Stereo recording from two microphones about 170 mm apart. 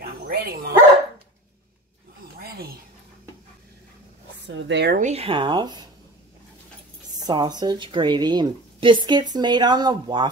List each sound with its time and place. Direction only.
0.0 s dog: 65° right (ahead or behind)
2.4 s a sound: 65° right (ahead or behind)
4.5 s speech: 90° right
4.9 s a woman's voice: 40° right (ahead or behind); by 5.9 s 25° right (ahead or behind)
7.2 s a woman's voice: 25° right (ahead or behind)